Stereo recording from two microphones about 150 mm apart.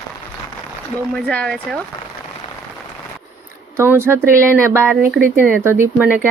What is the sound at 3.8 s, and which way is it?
Speech, 15° right (ahead or behind).